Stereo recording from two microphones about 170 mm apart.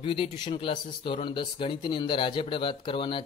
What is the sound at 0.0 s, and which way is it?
Speech, 30° left (ahead or behind).